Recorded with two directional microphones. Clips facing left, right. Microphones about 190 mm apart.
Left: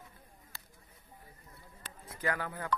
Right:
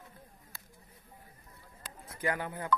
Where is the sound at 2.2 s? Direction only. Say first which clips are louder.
Right 1 dB; 20° right (ahead or behind).